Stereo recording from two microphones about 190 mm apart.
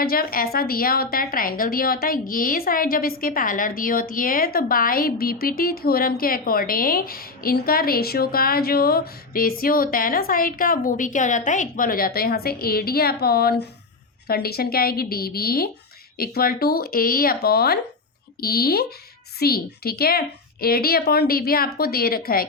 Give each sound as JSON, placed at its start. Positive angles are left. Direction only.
{"t": 0.0, "sound": "a woman's voice", "side_deg": 50}